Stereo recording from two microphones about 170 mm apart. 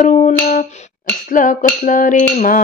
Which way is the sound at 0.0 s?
50° left (ahead or behind).